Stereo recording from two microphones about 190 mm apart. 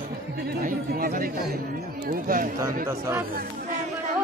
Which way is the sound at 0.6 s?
50° right (ahead or behind).